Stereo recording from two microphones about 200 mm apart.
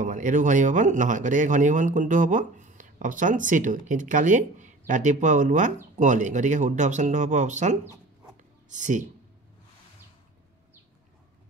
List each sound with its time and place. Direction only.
0.0 s speech: 40° right (ahead or behind)